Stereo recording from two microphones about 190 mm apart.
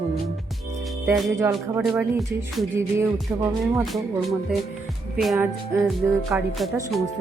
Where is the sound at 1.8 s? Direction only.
Centre (ahead or behind).